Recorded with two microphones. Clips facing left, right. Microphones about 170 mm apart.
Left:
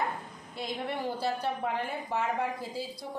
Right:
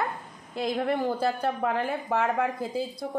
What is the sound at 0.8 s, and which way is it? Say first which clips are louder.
A woman's voice: right 4 dB; 50° right (ahead or behind).